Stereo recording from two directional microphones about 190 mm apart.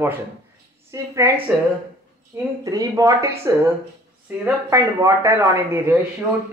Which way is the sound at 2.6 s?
15° right (ahead or behind).